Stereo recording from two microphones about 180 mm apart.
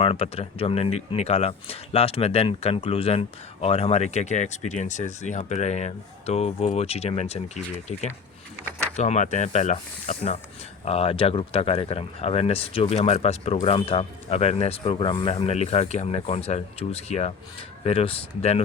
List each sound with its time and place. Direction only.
0.0 s speech: 35° left (ahead or behind)